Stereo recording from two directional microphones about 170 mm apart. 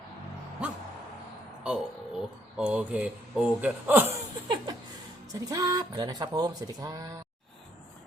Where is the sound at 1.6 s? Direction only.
5° right (ahead or behind).